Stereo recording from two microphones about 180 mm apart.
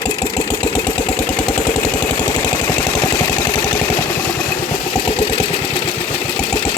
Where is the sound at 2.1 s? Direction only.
15° left (ahead or behind).